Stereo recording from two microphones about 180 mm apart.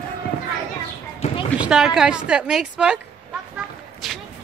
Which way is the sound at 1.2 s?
30° left (ahead or behind).